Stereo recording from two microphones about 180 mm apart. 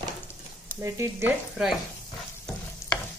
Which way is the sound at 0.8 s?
15° right (ahead or behind).